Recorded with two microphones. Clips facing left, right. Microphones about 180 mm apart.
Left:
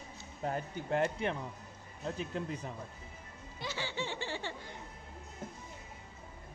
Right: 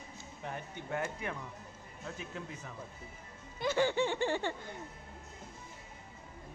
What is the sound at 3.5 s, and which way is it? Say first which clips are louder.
Speech: right 9 dB; 50° right (ahead or behind).